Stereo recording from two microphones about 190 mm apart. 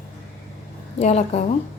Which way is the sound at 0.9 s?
35° left (ahead or behind).